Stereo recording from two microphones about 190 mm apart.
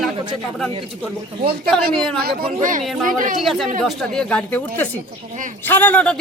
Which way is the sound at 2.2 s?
45° right (ahead or behind).